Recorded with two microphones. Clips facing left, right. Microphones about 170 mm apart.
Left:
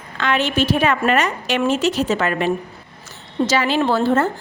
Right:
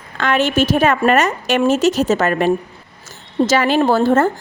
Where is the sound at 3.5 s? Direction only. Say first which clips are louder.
Right 4 dB; 45° right (ahead or behind).